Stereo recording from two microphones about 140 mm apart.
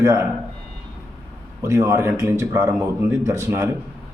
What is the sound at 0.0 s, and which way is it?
Speech, 20° right (ahead or behind).